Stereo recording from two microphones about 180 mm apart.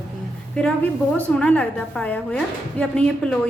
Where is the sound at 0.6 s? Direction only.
5° left (ahead or behind).